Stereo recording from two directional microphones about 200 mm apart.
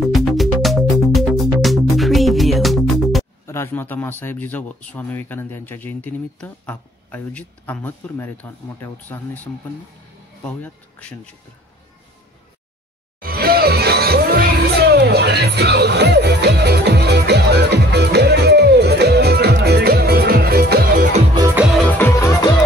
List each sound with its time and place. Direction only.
0.1 s music: centre (ahead or behind)
3.4 s speech: 10° left (ahead or behind)
10.6 s speech: 5° left (ahead or behind)
13.2 s music: 50° right (ahead or behind)
21.8 s music: 15° left (ahead or behind)